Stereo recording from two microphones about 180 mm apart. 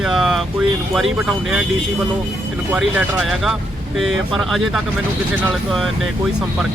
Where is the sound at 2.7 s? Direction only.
5° right (ahead or behind).